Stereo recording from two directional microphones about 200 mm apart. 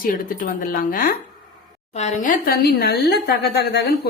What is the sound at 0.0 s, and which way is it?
A woman's voice, 45° left (ahead or behind).